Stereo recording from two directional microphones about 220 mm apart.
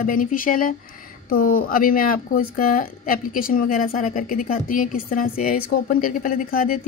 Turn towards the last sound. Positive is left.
turn(degrees=40)  # may be behind; listen again after turning